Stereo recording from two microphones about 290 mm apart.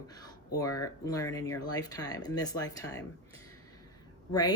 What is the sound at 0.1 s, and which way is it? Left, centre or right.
Speech, centre.